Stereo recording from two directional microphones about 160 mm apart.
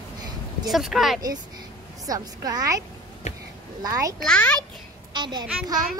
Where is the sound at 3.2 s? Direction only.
45° left (ahead or behind).